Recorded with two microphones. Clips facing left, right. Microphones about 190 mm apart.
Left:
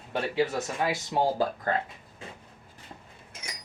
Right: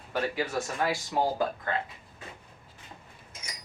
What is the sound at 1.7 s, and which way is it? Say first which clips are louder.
Speech: left 3 dB; 40° left (ahead or behind).